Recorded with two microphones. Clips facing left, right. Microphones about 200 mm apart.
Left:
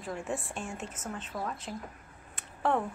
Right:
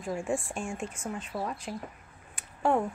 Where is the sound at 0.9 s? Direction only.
10° right (ahead or behind).